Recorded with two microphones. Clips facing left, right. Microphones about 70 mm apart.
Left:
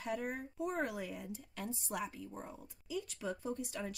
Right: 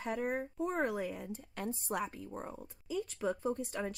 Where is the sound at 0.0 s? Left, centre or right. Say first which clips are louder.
Right 4 dB; right.